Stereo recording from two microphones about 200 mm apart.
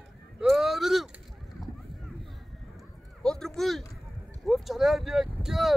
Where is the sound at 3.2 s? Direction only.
5° left (ahead or behind).